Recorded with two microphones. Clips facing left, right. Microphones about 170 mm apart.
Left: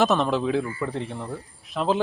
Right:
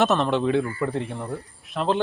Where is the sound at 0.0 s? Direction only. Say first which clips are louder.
Right 1 dB; centre (ahead or behind).